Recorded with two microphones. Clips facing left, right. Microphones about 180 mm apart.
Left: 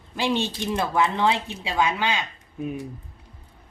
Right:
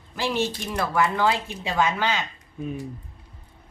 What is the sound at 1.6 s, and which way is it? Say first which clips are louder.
Speech: even; 10° left (ahead or behind).